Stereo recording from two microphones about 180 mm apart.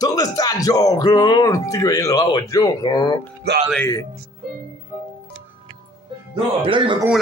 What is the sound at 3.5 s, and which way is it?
Speech, 65° right (ahead or behind).